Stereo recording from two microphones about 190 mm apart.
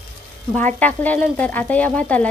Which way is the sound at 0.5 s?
10° left (ahead or behind).